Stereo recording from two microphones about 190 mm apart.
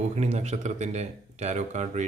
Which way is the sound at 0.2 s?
35° right (ahead or behind).